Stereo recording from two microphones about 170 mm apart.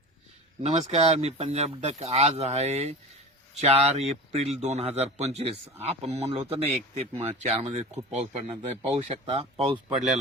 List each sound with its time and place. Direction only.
0.6 s speech: 40° right (ahead or behind)